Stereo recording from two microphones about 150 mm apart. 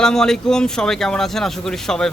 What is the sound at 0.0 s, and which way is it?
Speech, 5° left (ahead or behind).